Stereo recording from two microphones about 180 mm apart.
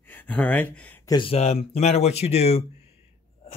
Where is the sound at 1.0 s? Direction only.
25° left (ahead or behind).